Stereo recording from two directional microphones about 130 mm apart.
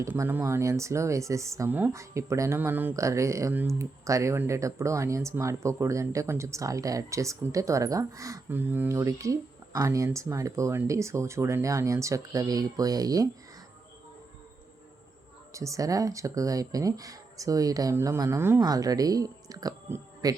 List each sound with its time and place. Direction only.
0.0 s speech: 20° right (ahead or behind)
15.5 s speech: 25° right (ahead or behind)